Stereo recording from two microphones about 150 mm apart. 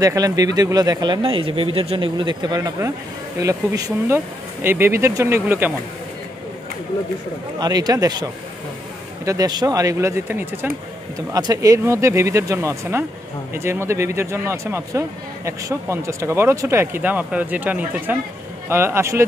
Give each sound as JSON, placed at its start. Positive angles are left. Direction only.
{"t": 0.0, "sound": "speech", "side_deg": -25}
{"t": 7.6, "sound": "speech", "side_deg": -25}